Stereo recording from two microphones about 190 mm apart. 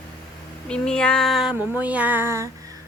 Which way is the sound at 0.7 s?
5° left (ahead or behind).